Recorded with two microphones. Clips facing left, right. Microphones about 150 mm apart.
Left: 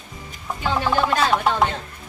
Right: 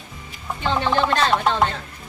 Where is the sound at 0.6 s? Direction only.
5° left (ahead or behind).